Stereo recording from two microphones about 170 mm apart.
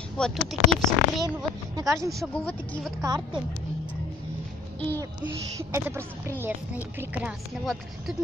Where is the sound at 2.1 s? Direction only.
10° left (ahead or behind).